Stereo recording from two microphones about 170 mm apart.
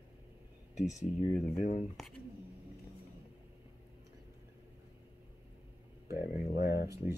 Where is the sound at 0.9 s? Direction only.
20° left (ahead or behind).